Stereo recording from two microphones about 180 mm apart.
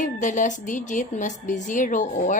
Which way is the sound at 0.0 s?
45° left (ahead or behind).